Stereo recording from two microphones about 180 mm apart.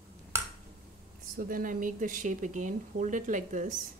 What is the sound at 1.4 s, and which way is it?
Speech, 50° right (ahead or behind).